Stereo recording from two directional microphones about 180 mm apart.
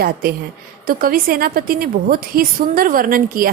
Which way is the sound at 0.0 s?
55° right (ahead or behind).